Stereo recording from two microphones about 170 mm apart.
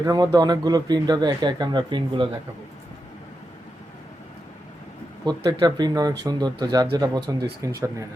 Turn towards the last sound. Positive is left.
turn(degrees=-20)  # may be behind; listen again after turning